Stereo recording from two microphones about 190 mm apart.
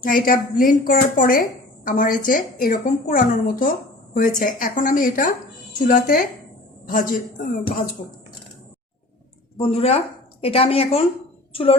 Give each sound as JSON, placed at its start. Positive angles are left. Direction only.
{"t": 0.0, "sound": "a woman's voice", "side_deg": 50}
{"t": 9.6, "sound": "a woman's voice", "side_deg": 30}